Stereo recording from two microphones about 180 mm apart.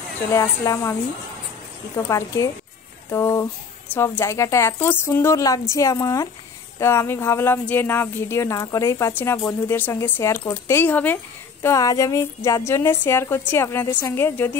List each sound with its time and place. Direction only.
0.3 s speech: 15° left (ahead or behind)
2.0 s speech: 15° left (ahead or behind)